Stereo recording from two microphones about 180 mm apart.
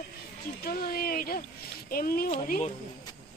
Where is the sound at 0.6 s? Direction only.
55° left (ahead or behind).